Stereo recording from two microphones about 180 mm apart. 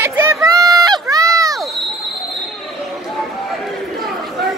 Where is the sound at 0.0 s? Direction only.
15° right (ahead or behind).